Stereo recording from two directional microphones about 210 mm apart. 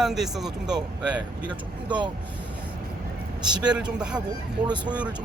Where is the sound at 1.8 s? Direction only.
20° right (ahead or behind).